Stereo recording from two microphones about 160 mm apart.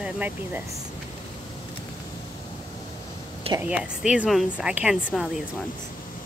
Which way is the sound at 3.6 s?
5° right (ahead or behind).